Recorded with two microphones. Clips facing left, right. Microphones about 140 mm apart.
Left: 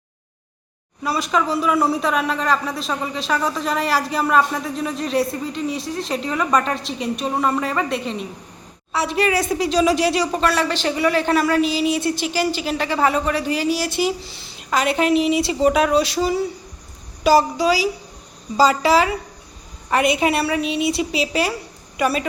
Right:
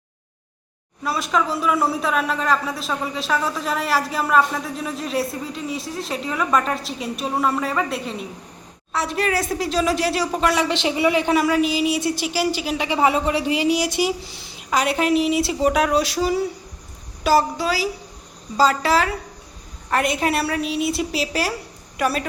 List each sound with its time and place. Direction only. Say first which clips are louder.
1.0 s a man's voice: left 1 dB; centre (ahead or behind)
10.4 s a woman's voice: even; 15° right (ahead or behind); by 22.3 s centre (ahead or behind)